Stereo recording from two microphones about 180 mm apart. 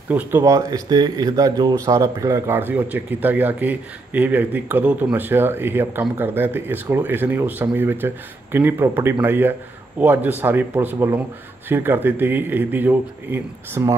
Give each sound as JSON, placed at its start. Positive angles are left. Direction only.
{"t": 0.1, "sound": "speech", "side_deg": -10}